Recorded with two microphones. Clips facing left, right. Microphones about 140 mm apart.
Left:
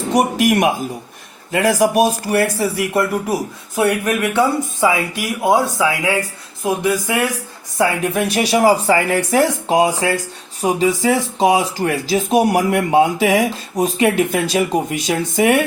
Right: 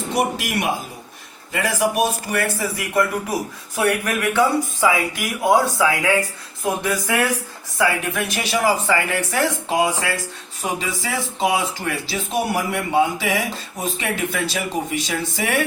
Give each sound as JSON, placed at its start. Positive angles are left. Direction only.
{"t": 0.1, "sound": "speech", "side_deg": 50}
{"t": 1.5, "sound": "speech", "side_deg": 40}
{"t": 3.8, "sound": "speech", "side_deg": 15}
{"t": 7.8, "sound": "speech", "side_deg": 35}